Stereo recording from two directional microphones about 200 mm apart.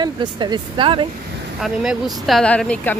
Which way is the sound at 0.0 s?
20° right (ahead or behind).